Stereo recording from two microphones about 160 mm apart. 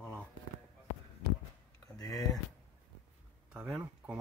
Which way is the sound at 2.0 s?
20° left (ahead or behind).